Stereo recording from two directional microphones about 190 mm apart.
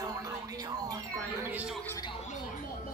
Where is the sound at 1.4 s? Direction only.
5° right (ahead or behind).